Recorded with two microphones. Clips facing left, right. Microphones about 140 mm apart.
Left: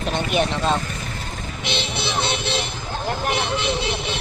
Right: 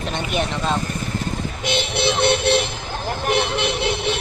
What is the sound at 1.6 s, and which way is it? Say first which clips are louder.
Music: right 5 dB; 55° right (ahead or behind).